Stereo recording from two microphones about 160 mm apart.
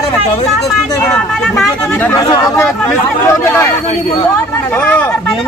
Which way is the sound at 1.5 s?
10° left (ahead or behind).